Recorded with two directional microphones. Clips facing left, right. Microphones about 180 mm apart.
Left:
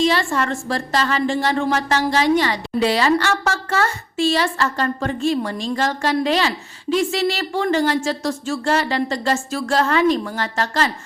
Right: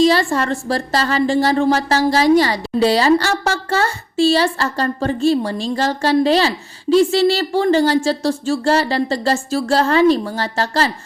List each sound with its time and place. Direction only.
0.0 s a woman's voice: 35° right (ahead or behind)